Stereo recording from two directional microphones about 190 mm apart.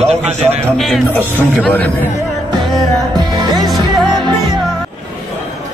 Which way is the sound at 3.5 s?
Centre (ahead or behind).